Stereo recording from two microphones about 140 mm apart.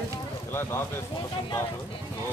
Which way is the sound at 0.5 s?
20° left (ahead or behind).